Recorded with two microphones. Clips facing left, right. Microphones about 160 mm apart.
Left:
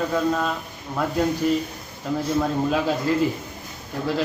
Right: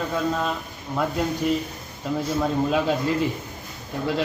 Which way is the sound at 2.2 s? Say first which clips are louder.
Left 1 dB; centre (ahead or behind).